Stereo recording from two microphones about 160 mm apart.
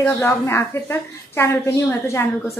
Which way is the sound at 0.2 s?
15° left (ahead or behind).